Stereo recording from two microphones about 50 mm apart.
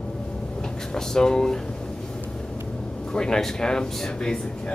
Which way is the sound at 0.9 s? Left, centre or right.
Centre.